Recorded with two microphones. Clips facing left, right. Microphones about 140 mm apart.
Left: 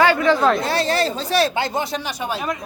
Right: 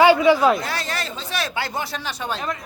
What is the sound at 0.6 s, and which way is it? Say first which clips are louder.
Speech: left 8 dB; 30° left (ahead or behind).